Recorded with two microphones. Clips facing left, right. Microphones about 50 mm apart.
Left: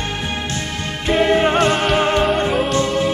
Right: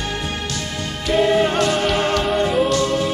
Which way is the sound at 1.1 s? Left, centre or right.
Left.